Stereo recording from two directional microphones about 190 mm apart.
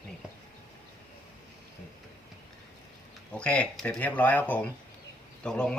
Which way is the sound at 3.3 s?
5° left (ahead or behind).